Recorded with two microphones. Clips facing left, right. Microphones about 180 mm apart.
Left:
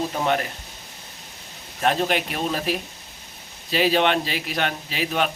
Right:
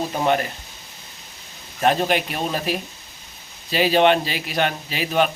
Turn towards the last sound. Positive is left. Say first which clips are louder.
# right 4 dB
turn(degrees=0)  # may be behind; listen again after turning